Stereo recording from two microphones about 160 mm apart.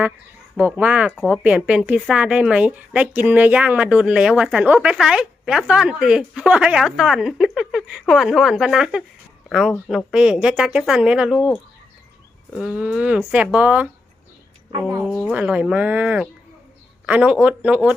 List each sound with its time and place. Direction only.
0.5 s a woman's voice: 10° right (ahead or behind)
14.7 s speech: 20° right (ahead or behind)
15.3 s speech: 5° right (ahead or behind)